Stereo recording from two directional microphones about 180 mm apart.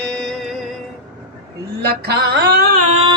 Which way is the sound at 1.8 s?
60° right (ahead or behind).